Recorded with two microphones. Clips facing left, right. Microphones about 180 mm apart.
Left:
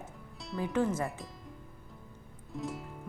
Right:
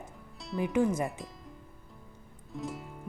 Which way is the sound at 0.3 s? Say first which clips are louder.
Right 3 dB; centre (ahead or behind).